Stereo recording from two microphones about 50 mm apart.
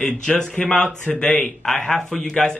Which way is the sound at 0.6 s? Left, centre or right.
Left.